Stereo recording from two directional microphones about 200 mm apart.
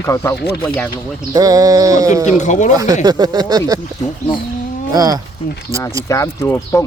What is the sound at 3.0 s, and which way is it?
Speech, 20° right (ahead or behind).